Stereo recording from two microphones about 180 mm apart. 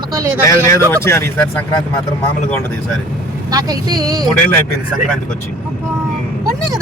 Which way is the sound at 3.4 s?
20° right (ahead or behind).